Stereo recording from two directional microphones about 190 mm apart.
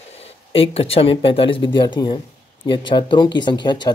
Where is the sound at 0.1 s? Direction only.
30° left (ahead or behind).